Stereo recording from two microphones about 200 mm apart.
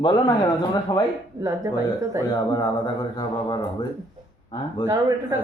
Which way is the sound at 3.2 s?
25° left (ahead or behind).